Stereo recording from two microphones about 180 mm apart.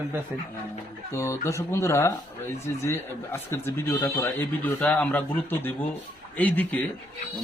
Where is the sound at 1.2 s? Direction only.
15° left (ahead or behind).